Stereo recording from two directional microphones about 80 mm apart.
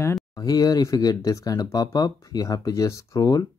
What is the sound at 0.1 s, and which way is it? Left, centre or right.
Speech, left.